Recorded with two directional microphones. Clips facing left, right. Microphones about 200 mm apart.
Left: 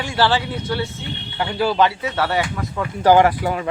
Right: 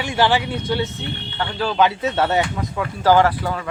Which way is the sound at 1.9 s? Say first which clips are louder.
Right 2 dB; 25° right (ahead or behind).